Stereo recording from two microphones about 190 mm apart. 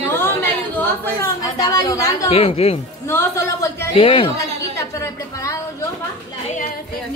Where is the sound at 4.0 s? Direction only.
30° left (ahead or behind).